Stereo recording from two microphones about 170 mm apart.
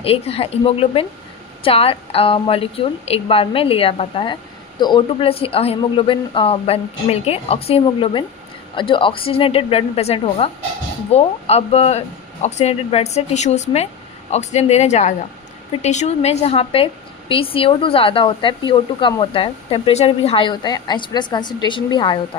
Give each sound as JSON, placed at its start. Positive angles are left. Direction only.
{"t": 0.0, "sound": "a woman's voice", "side_deg": 35}